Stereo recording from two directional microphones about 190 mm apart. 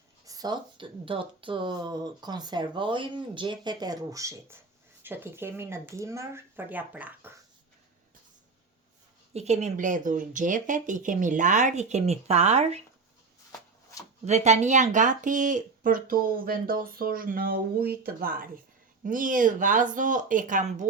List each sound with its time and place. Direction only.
0.3 s speech: 20° right (ahead or behind)
9.3 s speech: 35° right (ahead or behind)
14.3 s speech: 35° right (ahead or behind)